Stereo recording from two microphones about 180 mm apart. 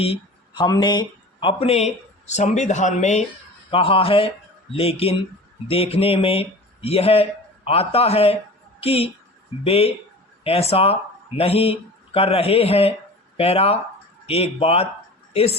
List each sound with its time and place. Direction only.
0.0 s a man's voice: 30° left (ahead or behind)